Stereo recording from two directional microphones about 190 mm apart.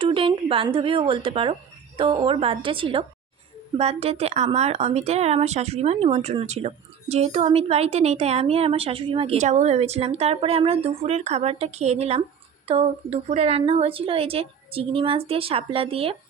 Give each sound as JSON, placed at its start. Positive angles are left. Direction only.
{"t": 0.0, "sound": "a woman's voice", "side_deg": -25}